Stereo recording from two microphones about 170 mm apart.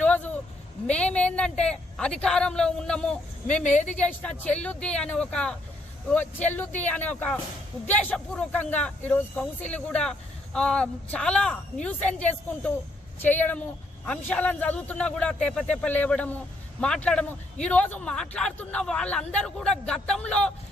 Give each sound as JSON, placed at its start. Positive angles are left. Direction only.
{"t": 0.0, "sound": "a sound", "side_deg": 10}
{"t": 0.9, "sound": "a woman's voice", "side_deg": 5}
{"t": 3.6, "sound": "a woman's voice", "side_deg": 45}
{"t": 3.8, "sound": "speech", "side_deg": 10}